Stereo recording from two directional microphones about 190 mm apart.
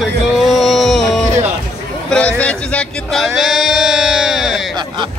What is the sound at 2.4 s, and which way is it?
Speech, 5° left (ahead or behind).